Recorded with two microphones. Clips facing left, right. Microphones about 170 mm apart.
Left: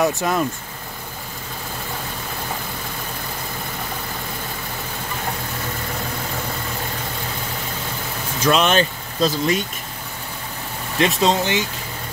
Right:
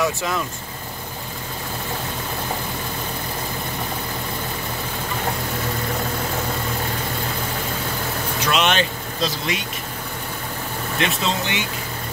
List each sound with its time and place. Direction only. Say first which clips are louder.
0.0 s speech: left 3 dB; 45° left (ahead or behind)
8.5 s speech: left 4 dB; 40° left (ahead or behind)
11.0 s speech: left 6 dB; 35° left (ahead or behind)